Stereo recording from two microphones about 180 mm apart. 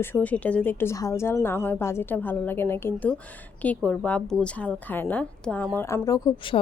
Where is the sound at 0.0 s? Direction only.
10° left (ahead or behind).